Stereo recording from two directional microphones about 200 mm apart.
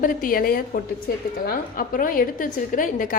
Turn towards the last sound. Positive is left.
turn(degrees=40)  # may be behind; listen again after turning